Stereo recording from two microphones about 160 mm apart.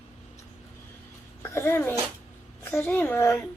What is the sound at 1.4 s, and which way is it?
A child's voice, 15° left (ahead or behind).